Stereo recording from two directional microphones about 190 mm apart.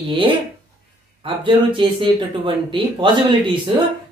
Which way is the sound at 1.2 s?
25° right (ahead or behind).